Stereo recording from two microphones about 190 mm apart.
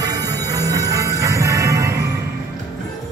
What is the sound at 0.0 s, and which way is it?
Music, 20° right (ahead or behind).